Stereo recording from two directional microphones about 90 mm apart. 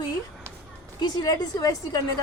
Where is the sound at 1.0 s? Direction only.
45° left (ahead or behind).